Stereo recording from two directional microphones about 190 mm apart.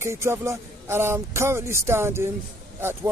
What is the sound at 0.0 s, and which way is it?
Speech, 15° right (ahead or behind).